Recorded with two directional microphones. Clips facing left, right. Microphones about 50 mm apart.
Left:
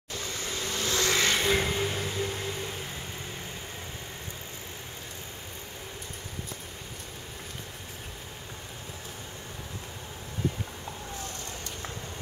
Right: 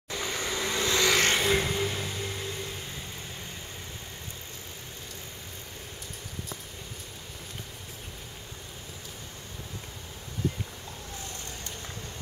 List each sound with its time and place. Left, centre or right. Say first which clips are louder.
0.1 s vehicle: right 3 dB; right
1.4 s music: even; centre